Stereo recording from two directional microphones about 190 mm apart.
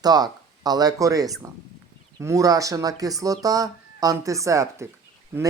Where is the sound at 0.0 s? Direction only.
20° right (ahead or behind).